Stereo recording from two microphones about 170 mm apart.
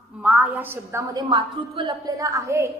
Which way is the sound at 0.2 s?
5° right (ahead or behind).